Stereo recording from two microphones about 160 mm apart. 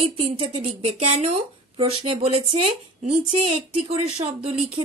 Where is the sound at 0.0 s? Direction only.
35° right (ahead or behind).